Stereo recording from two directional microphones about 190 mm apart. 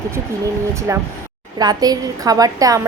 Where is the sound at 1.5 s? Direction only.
20° right (ahead or behind).